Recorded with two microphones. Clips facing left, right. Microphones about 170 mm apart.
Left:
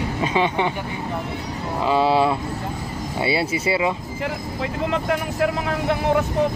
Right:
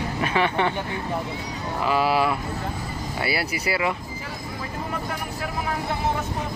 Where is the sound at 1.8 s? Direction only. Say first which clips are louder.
Left 4 dB; 25° left (ahead or behind).